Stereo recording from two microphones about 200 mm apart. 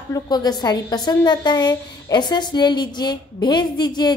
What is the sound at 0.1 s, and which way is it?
A woman's voice, 20° left (ahead or behind).